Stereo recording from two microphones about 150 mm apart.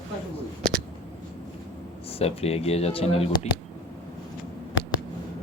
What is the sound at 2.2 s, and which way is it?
Speech, 40° left (ahead or behind).